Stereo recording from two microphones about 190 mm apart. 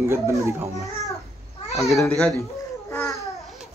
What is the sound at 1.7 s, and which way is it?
Speech, centre (ahead or behind).